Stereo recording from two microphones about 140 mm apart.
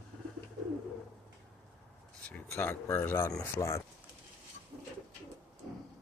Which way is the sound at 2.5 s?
15° left (ahead or behind).